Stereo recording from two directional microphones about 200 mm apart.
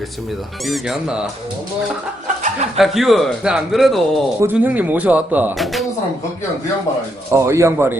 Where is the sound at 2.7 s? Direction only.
Centre (ahead or behind).